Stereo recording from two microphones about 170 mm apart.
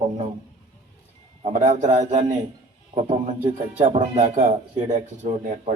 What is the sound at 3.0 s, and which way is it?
Speech, 30° right (ahead or behind).